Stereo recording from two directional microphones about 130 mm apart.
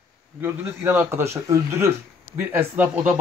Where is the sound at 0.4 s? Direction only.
15° right (ahead or behind).